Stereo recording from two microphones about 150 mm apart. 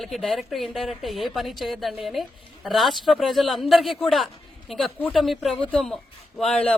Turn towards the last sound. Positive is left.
turn(degrees=5)  # may be behind; listen again after turning